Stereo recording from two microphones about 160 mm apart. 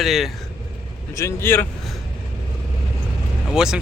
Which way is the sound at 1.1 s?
15° left (ahead or behind).